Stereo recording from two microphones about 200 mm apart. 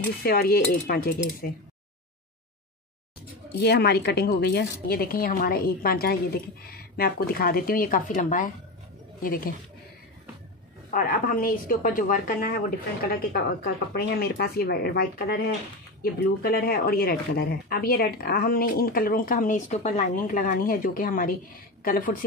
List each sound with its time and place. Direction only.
0.0 s speech: 50° left (ahead or behind)
3.5 s speech: 55° left (ahead or behind)
10.9 s speech: 45° left (ahead or behind)
13.9 s speech: 50° left (ahead or behind)